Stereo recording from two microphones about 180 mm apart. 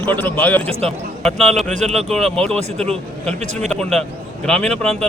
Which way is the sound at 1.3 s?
35° right (ahead or behind).